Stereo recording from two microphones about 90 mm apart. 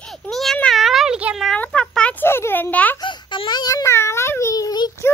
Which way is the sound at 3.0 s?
60° left (ahead or behind).